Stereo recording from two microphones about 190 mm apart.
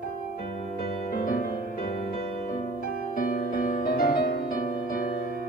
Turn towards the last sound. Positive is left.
turn(degrees=50)  # may be behind; listen again after turning